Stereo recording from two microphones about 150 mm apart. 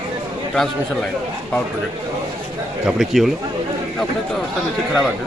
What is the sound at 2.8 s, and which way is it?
Speech, centre (ahead or behind).